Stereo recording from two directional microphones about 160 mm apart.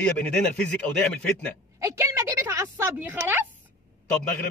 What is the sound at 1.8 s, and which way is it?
A woman's voice, 20° right (ahead or behind).